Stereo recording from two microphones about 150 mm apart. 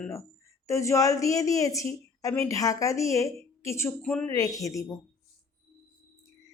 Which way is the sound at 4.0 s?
5° left (ahead or behind).